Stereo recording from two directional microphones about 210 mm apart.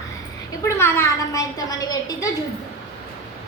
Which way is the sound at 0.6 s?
10° left (ahead or behind).